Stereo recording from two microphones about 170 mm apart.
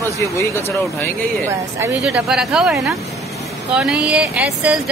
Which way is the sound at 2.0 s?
5° right (ahead or behind).